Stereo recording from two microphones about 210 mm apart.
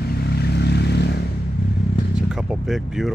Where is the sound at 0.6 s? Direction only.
50° left (ahead or behind).